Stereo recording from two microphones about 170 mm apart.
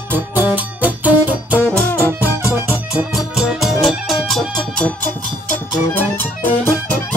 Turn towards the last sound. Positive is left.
turn(degrees=10)  # may be behind; listen again after turning